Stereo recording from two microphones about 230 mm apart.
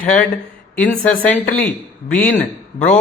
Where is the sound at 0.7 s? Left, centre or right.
Centre.